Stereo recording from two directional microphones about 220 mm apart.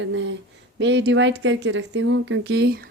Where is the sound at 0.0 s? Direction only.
55° right (ahead or behind).